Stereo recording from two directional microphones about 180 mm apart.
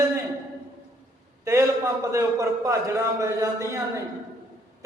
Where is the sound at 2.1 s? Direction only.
15° right (ahead or behind).